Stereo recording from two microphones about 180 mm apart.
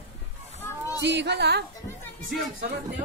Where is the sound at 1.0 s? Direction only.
70° right (ahead or behind).